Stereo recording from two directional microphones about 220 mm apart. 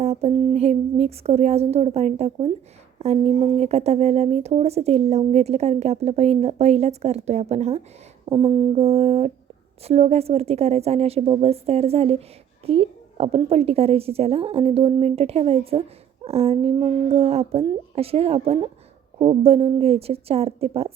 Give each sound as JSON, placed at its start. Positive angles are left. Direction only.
{"t": 0.0, "sound": "speech", "side_deg": -30}